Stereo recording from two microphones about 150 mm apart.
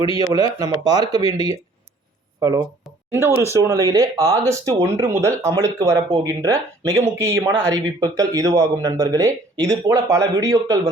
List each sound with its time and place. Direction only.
0.2 s speech: 25° right (ahead or behind)
3.1 s speech: 15° right (ahead or behind)